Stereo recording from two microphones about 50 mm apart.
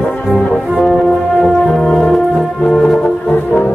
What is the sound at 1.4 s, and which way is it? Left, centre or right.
Music, centre.